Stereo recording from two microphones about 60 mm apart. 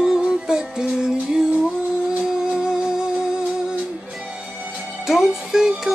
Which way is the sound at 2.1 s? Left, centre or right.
Centre.